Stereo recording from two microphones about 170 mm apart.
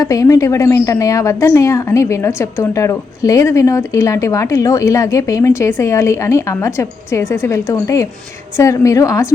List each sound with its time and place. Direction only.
0.0 s a woman's voice: 20° left (ahead or behind)